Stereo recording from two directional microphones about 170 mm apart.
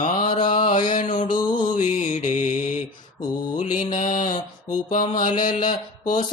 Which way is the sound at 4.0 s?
50° left (ahead or behind).